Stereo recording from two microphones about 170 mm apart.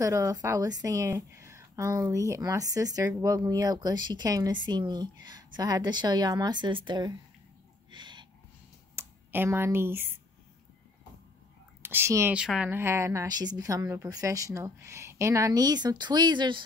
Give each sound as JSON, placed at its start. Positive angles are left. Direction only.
{"t": 0.0, "sound": "a woman's voice", "side_deg": -20}
{"t": 7.9, "sound": "a sound", "side_deg": -25}
{"t": 8.9, "sound": "speech", "side_deg": -15}
{"t": 11.8, "sound": "a woman's voice", "side_deg": -15}